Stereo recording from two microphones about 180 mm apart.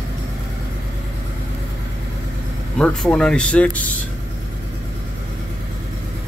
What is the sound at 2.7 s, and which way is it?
Speech, 5° left (ahead or behind).